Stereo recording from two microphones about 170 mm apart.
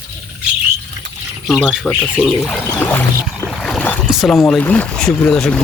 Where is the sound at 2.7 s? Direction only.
15° left (ahead or behind).